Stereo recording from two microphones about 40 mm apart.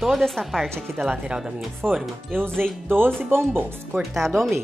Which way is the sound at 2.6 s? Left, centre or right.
Right.